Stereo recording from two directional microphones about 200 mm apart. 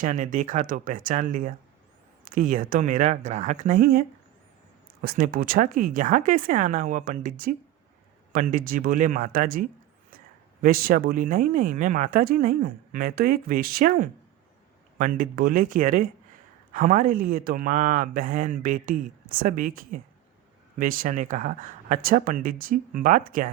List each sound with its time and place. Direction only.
0.0 s speech: 40° right (ahead or behind)
5.0 s speech: 45° right (ahead or behind)